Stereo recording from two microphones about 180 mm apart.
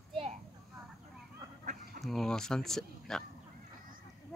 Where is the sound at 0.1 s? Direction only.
30° right (ahead or behind).